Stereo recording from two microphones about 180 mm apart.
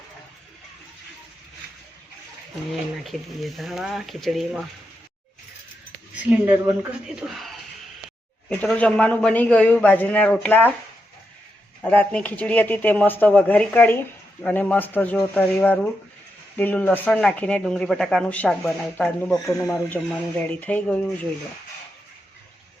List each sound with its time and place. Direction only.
3.0 s speech: centre (ahead or behind)
6.1 s a man's voice: 10° right (ahead or behind); by 10.8 s 10° left (ahead or behind)
11.8 s a man's voice: 5° left (ahead or behind)